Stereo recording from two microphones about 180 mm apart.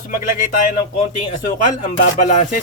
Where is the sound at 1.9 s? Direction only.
40° left (ahead or behind).